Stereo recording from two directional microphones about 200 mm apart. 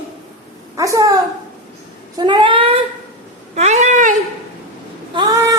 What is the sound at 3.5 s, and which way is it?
Cat, 35° right (ahead or behind).